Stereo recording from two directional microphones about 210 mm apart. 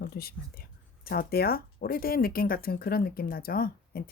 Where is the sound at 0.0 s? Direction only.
45° left (ahead or behind).